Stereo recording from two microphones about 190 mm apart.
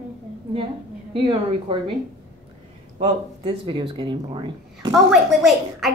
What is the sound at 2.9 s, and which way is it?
Speech, 30° right (ahead or behind).